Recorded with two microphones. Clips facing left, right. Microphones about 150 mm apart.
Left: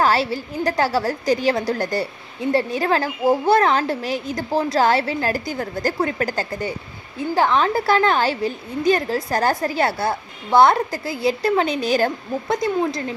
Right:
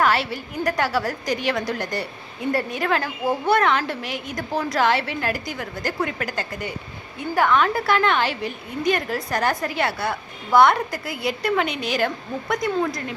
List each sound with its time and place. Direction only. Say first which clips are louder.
0.0 s a woman's voice: left 2 dB; 30° left (ahead or behind)